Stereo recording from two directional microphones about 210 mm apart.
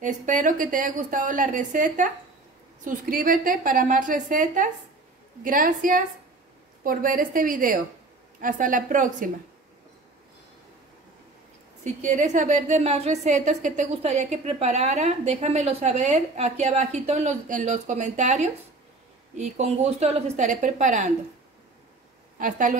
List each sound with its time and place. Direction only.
0.0 s a woman's voice: 35° right (ahead or behind)
11.8 s a woman's voice: 35° right (ahead or behind)
22.4 s a woman's voice: 40° right (ahead or behind)